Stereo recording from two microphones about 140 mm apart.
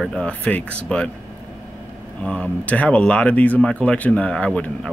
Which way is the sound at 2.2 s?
10° left (ahead or behind).